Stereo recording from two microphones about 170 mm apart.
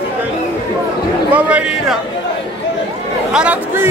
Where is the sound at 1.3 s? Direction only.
10° right (ahead or behind).